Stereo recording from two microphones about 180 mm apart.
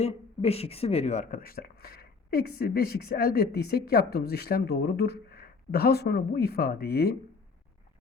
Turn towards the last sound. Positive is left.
turn(degrees=60)  # may be behind; listen again after turning